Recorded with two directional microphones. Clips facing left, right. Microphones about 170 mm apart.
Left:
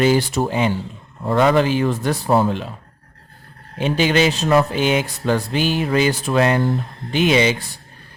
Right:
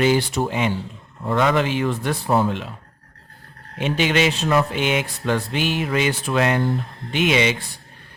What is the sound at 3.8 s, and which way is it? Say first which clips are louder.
Speech: left 3 dB; 35° left (ahead or behind).